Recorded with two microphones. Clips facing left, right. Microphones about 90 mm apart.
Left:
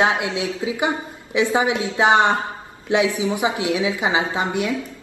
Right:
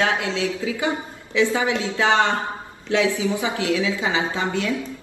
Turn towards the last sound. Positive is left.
turn(degrees=20)  # may be behind; listen again after turning